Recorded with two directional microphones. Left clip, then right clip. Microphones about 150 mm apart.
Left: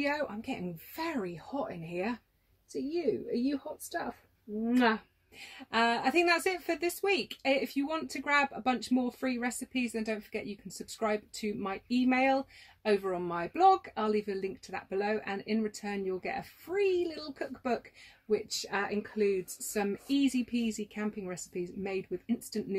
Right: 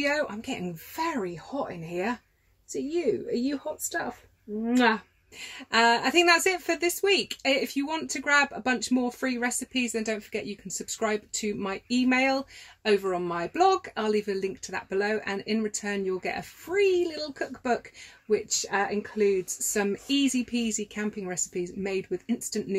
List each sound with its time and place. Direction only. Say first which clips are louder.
0.0 s a woman's voice: right 6 dB; 15° right (ahead or behind)